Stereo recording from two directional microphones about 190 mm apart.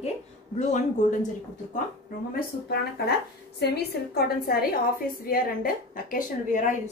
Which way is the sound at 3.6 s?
55° left (ahead or behind).